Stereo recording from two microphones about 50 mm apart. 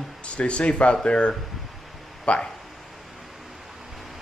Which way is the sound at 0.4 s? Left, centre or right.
Left.